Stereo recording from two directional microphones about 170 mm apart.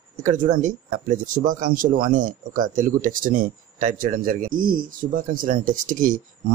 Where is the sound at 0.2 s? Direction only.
45° right (ahead or behind).